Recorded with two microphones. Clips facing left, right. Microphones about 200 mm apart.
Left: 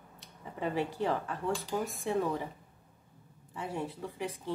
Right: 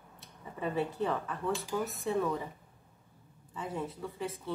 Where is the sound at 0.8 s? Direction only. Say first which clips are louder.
Even; 15° left (ahead or behind).